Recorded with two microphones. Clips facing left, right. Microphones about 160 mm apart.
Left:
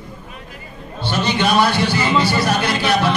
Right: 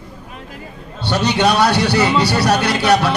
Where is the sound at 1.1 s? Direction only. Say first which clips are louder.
Right 2 dB; 70° right (ahead or behind).